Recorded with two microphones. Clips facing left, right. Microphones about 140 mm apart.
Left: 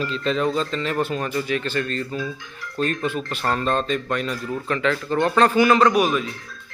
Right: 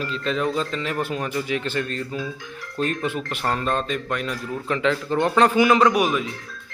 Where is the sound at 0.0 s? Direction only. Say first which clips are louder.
Left 2 dB; 5° right (ahead or behind).